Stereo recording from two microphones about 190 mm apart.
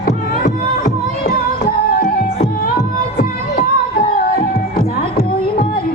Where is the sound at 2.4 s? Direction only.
50° left (ahead or behind).